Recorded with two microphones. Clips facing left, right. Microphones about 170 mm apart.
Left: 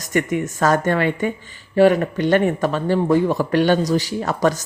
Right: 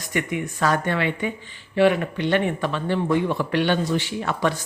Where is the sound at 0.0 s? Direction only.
45° left (ahead or behind).